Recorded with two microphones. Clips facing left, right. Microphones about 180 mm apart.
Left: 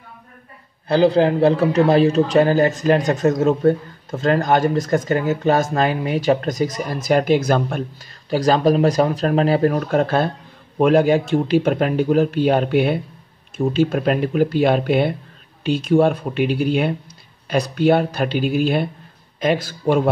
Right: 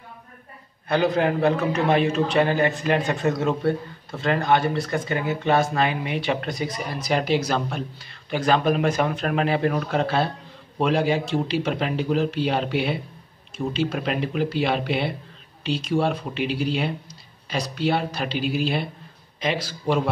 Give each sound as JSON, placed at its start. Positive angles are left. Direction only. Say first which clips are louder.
{"t": 0.8, "sound": "a man's voice", "louder": "left 6 dB", "side_deg": 30}
{"t": 8.3, "sound": "a man's voice", "louder": "left 5 dB", "side_deg": 40}